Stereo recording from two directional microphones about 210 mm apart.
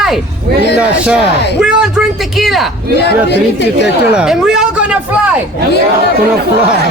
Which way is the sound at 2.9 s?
55° left (ahead or behind).